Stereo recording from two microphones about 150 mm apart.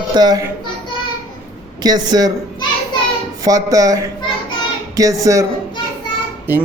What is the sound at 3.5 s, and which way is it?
A child's voice, 25° right (ahead or behind).